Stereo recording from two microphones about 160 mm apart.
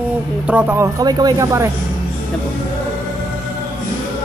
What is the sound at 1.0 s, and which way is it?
Speech, 25° right (ahead or behind).